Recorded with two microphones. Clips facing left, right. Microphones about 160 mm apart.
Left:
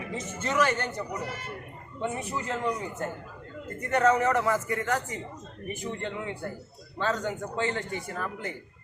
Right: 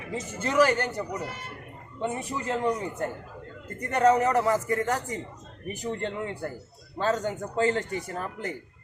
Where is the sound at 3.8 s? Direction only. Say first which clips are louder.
Right 2 dB; 35° right (ahead or behind).